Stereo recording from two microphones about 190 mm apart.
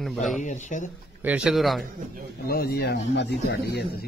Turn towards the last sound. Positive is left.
turn(degrees=60)  # may be behind; listen again after turning